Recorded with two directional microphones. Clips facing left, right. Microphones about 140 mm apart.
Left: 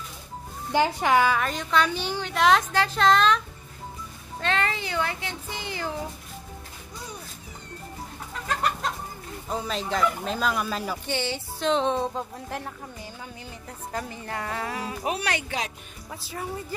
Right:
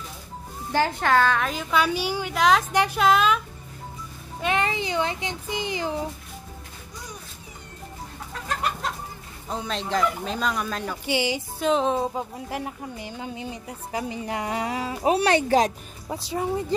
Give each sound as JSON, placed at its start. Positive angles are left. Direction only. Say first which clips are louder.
{"t": 0.7, "sound": "speech", "louder": "even", "side_deg": 15}
{"t": 1.4, "sound": "speech", "louder": "right 1 dB", "side_deg": -5}
{"t": 2.7, "sound": "speech", "louder": "right 1 dB", "side_deg": -15}
{"t": 9.5, "sound": "speech", "louder": "right 1 dB", "side_deg": 0}
{"t": 11.1, "sound": "speech", "louder": "right 4 dB", "side_deg": -10}